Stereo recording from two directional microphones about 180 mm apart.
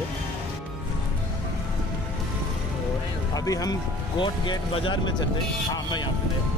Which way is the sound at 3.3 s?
20° left (ahead or behind).